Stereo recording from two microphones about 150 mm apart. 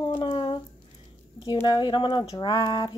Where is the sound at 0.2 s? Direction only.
35° left (ahead or behind).